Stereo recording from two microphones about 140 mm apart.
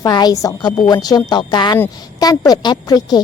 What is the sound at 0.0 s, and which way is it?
A woman's voice, 30° left (ahead or behind).